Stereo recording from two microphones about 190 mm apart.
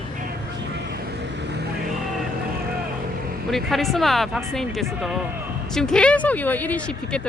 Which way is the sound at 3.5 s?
Centre (ahead or behind).